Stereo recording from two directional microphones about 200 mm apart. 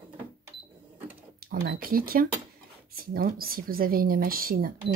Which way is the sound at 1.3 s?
50° right (ahead or behind).